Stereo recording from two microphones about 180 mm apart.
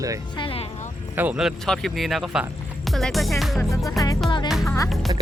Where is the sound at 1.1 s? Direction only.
10° right (ahead or behind).